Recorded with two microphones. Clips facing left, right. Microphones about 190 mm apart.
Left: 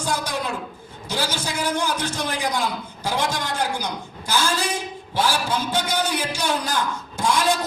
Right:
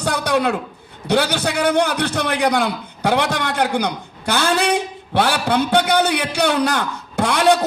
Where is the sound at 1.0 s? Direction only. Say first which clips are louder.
Right 9 dB; 65° right (ahead or behind).